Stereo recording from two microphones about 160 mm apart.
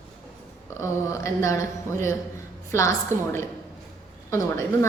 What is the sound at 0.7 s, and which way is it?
Speech, 15° left (ahead or behind).